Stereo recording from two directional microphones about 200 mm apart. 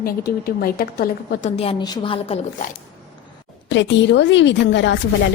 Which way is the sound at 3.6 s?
65° left (ahead or behind).